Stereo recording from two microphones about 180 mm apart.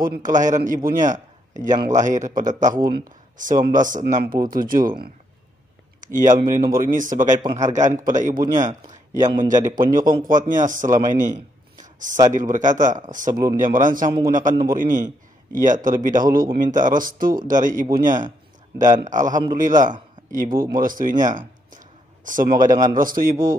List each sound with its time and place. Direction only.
0.0 s speech: 50° right (ahead or behind)
6.1 s speech: 45° right (ahead or behind)
8.8 s a sound: 20° right (ahead or behind)
9.5 s speech: 45° right (ahead or behind)
11.8 s a sound: 45° right (ahead or behind)
12.3 s speech: 45° right (ahead or behind)
23.3 s speech: 20° right (ahead or behind)